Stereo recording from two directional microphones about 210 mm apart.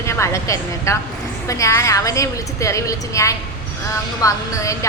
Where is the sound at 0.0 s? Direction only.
15° left (ahead or behind).